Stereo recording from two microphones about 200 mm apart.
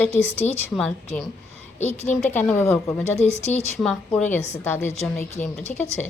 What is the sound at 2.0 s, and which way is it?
Speech, 35° left (ahead or behind).